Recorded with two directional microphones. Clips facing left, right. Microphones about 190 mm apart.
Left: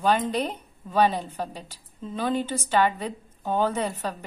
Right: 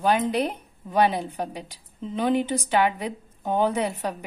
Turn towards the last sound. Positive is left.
turn(degrees=-10)  # may be behind; listen again after turning